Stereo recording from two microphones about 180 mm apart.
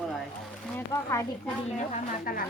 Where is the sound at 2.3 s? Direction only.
50° left (ahead or behind).